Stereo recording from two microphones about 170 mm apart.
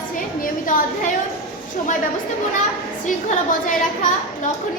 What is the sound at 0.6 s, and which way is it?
Speech, 50° left (ahead or behind).